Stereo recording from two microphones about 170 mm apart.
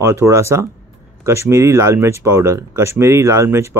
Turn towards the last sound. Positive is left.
turn(degrees=-15)  # may be behind; listen again after turning